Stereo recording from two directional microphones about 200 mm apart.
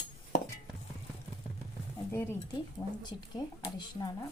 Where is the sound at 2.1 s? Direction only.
15° left (ahead or behind).